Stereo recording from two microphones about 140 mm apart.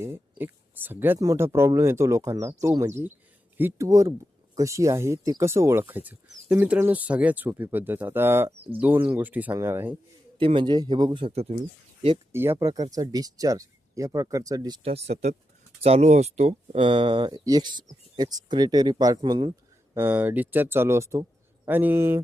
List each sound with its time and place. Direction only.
0.0 s speech: 15° right (ahead or behind)
1.2 s speech: 25° right (ahead or behind)
10.3 s speech: 35° right (ahead or behind)
12.3 s speech: 15° right (ahead or behind)
14.8 s speech: 50° right (ahead or behind); by 20.0 s 30° right (ahead or behind)
20.0 s speech: 15° right (ahead or behind)